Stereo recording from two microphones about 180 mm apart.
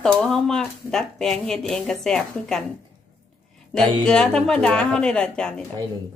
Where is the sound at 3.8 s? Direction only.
25° right (ahead or behind).